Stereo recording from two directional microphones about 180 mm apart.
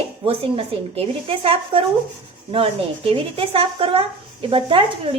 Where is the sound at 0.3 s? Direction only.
30° right (ahead or behind).